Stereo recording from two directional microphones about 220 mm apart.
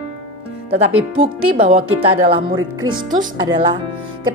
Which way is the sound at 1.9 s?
25° right (ahead or behind).